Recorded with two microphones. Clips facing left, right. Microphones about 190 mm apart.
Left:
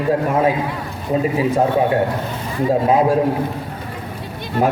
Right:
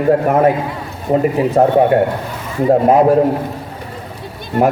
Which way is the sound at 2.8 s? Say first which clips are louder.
Right 4 dB; 60° right (ahead or behind).